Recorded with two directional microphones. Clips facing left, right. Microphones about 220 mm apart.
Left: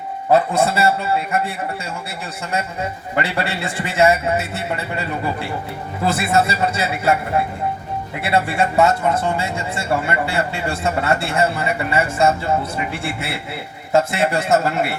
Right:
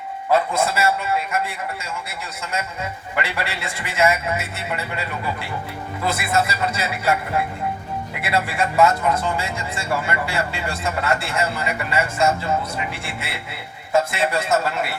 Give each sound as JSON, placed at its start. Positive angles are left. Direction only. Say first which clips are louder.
{"t": 0.3, "sound": "a man's voice", "louder": "left 4 dB", "side_deg": 35}
{"t": 13.9, "sound": "a man's voice", "louder": "left 3 dB", "side_deg": 30}